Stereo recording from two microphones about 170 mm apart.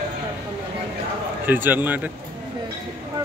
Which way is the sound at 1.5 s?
10° right (ahead or behind).